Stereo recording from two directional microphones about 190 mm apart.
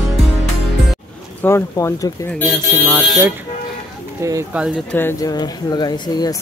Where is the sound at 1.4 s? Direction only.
15° left (ahead or behind).